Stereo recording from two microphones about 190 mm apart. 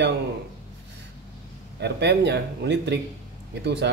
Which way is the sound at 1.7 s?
60° right (ahead or behind).